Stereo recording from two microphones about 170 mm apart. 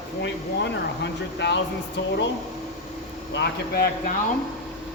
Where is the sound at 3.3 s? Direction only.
65° left (ahead or behind).